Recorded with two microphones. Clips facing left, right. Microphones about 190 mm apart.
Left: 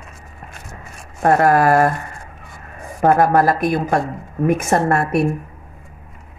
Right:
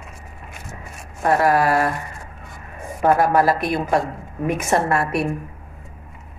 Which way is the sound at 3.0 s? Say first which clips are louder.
Left 2 dB; 45° left (ahead or behind).